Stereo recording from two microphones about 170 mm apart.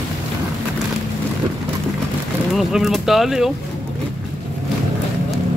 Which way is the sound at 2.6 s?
Centre (ahead or behind).